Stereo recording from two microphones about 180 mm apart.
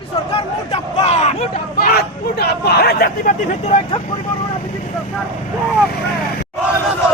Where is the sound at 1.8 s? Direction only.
60° left (ahead or behind); by 3.7 s 45° left (ahead or behind).